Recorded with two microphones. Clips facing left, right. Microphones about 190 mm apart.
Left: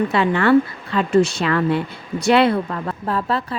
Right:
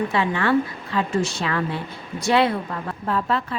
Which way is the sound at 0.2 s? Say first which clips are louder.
Left 6 dB; 65° left (ahead or behind).